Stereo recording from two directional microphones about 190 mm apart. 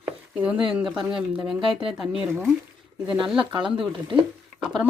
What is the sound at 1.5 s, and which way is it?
Speech, 25° right (ahead or behind).